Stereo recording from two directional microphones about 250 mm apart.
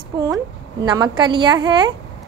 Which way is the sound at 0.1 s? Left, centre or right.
Centre.